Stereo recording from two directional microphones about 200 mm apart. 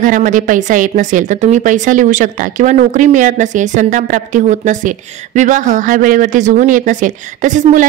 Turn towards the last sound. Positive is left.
turn(degrees=-40)  # may be behind; listen again after turning